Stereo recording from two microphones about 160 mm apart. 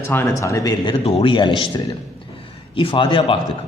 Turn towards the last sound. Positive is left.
turn(degrees=35)  # may be behind; listen again after turning